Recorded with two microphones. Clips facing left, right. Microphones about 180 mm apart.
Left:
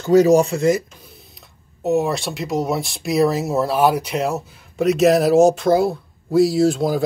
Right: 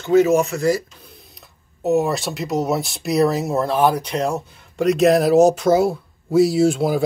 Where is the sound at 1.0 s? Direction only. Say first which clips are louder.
Even; centre (ahead or behind).